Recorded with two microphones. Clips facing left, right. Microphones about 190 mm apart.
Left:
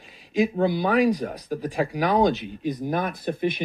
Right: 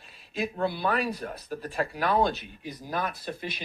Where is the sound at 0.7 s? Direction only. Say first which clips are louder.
Left 8 dB; 15° left (ahead or behind).